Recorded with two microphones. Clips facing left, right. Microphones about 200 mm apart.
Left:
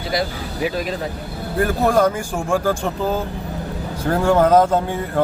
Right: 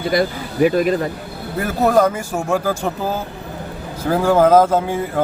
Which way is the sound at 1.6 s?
5° right (ahead or behind).